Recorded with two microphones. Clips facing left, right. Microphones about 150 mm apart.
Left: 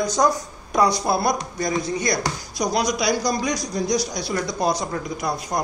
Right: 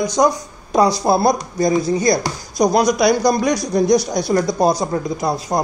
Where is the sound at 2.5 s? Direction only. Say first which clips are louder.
Right 8 dB; 45° right (ahead or behind).